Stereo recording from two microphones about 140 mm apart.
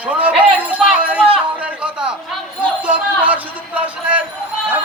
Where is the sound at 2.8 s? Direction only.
10° right (ahead or behind).